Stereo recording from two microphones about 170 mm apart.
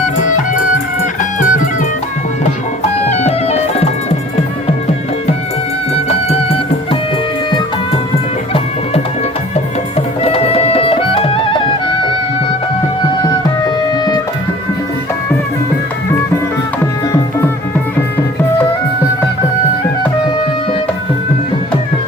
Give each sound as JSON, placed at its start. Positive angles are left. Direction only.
{"t": 0.2, "sound": "music", "side_deg": 50}
{"t": 3.1, "sound": "music", "side_deg": 40}
{"t": 5.9, "sound": "music", "side_deg": 40}
{"t": 10.2, "sound": "music", "side_deg": 35}
{"t": 13.2, "sound": "music", "side_deg": 25}
{"t": 16.8, "sound": "music", "side_deg": 15}